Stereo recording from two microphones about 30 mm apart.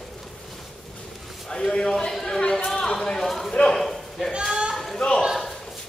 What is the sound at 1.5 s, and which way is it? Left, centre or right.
Speech, left.